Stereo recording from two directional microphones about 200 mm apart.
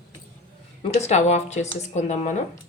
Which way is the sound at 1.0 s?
35° left (ahead or behind).